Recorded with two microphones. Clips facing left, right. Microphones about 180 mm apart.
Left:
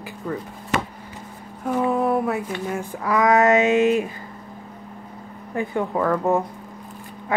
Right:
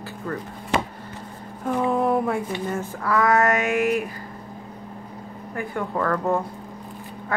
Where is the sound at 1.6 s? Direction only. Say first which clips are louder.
Left 1 dB; 5° left (ahead or behind).